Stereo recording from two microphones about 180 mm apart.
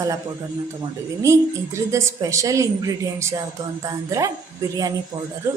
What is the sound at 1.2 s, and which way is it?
Speech, 15° right (ahead or behind).